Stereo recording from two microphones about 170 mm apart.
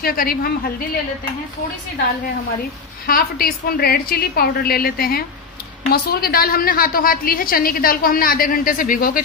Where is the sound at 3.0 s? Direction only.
60° left (ahead or behind).